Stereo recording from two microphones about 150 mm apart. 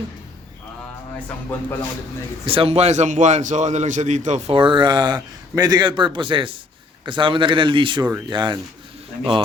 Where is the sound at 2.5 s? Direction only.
40° right (ahead or behind).